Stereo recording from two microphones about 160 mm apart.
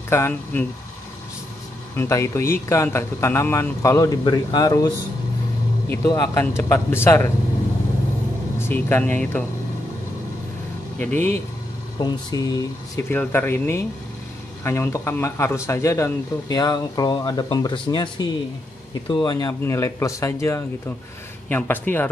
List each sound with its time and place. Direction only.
0.1 s speech: 15° left (ahead or behind)
2.0 s a man's voice: 20° left (ahead or behind)
8.5 s speech: 15° left (ahead or behind)
11.0 s speech: 10° left (ahead or behind)
12.0 s a man's voice: 25° left (ahead or behind)
13.1 s a man's voice: 10° left (ahead or behind); by 19.5 s 30° left (ahead or behind)
19.6 s speech: 20° left (ahead or behind)